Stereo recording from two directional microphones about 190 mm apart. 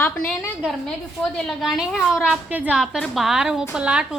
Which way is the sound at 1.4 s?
Centre (ahead or behind).